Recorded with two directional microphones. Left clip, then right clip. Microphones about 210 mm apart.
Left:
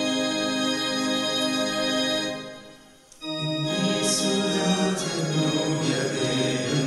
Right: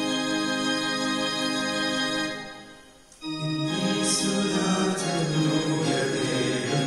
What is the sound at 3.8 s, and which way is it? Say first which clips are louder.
Music: left 2 dB; 50° left (ahead or behind).